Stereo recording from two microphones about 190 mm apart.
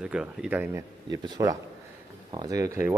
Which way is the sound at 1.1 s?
20° right (ahead or behind).